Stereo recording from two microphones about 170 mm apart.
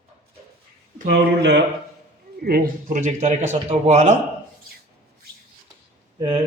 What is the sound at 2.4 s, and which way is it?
Speech, 60° right (ahead or behind).